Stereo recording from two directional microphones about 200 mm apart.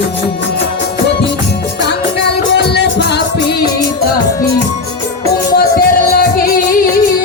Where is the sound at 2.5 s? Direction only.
60° left (ahead or behind).